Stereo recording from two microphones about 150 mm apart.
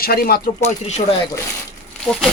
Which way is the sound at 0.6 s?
50° left (ahead or behind).